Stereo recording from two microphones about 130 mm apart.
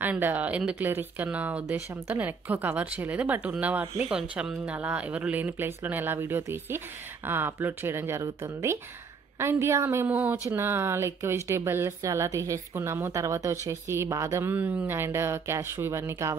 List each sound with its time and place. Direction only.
0.0 s speech: 15° right (ahead or behind)